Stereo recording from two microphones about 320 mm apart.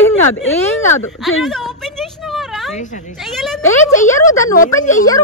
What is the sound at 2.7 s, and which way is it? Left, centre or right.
Speech, left.